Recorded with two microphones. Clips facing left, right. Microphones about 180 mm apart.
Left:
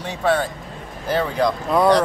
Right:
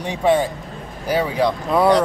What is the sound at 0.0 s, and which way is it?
Speech, 15° right (ahead or behind).